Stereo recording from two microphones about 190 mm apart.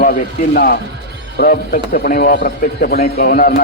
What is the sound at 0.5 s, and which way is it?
Speech, 55° left (ahead or behind).